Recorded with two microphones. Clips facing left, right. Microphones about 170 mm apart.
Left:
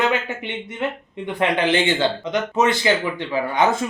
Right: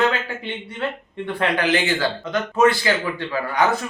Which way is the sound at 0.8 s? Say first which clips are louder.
Even; 20° left (ahead or behind).